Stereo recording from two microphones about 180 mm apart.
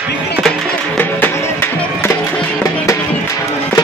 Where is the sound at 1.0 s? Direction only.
10° left (ahead or behind).